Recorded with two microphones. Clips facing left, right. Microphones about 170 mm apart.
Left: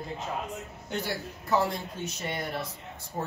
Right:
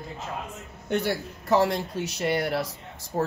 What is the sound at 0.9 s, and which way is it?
Speech, 65° right (ahead or behind).